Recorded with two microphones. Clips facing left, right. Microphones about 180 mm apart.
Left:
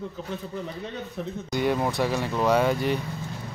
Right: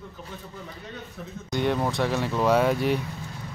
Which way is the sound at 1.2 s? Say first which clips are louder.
Left 10 dB; 75° left (ahead or behind).